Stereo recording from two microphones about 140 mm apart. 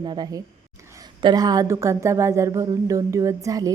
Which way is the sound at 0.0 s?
30° right (ahead or behind).